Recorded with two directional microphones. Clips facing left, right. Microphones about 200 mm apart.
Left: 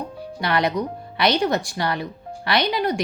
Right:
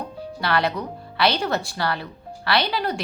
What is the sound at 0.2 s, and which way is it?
Speech, 15° left (ahead or behind).